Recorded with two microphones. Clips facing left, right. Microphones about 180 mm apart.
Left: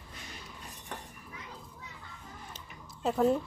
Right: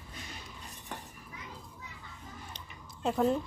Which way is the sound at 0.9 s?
Centre (ahead or behind).